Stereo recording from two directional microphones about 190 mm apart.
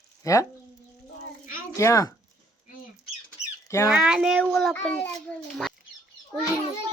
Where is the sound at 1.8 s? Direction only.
15° left (ahead or behind).